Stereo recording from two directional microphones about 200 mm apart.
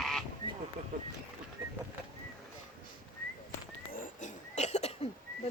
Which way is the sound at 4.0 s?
40° left (ahead or behind).